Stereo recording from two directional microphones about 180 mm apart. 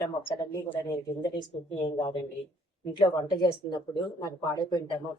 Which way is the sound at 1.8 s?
25° left (ahead or behind).